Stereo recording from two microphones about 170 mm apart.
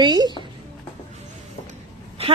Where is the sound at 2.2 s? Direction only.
35° right (ahead or behind).